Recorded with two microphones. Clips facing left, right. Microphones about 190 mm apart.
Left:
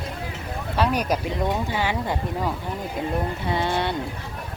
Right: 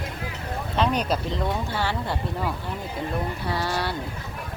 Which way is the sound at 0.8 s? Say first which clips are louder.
Left 1 dB; 10° left (ahead or behind).